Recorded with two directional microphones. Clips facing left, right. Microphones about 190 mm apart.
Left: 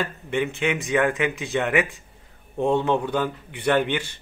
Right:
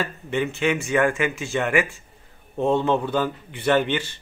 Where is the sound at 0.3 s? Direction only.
15° left (ahead or behind).